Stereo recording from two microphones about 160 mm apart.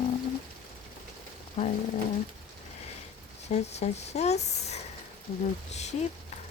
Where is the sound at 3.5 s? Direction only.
45° left (ahead or behind).